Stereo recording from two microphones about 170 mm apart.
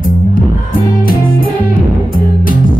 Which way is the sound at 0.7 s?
60° left (ahead or behind).